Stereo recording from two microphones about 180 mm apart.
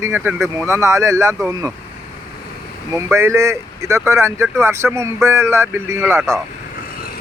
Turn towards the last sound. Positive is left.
turn(degrees=-15)  # may be behind; listen again after turning